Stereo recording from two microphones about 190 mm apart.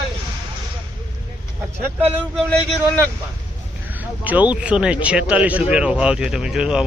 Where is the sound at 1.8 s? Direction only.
10° right (ahead or behind).